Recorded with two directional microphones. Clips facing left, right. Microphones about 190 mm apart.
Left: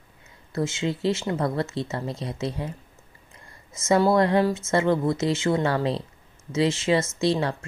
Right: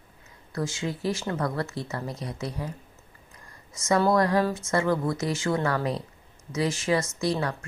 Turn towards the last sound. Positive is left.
turn(degrees=25)  # may be behind; listen again after turning